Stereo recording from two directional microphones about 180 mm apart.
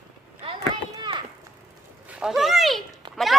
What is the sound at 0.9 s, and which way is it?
Children playing, 25° right (ahead or behind).